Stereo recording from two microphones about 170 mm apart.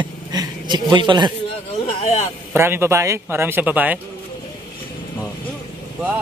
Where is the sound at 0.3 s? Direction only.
25° right (ahead or behind).